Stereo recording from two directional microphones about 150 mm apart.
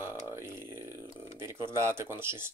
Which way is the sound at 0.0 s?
15° right (ahead or behind).